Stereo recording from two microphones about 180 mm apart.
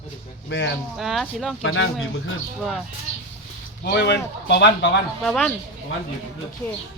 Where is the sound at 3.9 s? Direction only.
70° left (ahead or behind).